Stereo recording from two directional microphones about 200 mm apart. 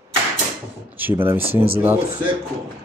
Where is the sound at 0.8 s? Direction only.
10° right (ahead or behind).